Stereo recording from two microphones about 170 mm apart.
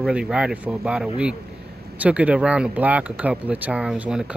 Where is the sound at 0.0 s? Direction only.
5° right (ahead or behind).